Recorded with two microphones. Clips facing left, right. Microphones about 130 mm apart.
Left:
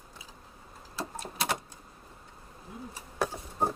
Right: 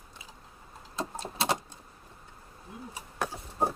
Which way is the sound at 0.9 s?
25° right (ahead or behind).